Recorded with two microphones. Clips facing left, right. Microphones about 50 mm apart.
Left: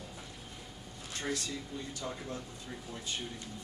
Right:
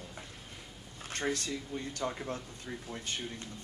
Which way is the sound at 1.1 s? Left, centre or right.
Right.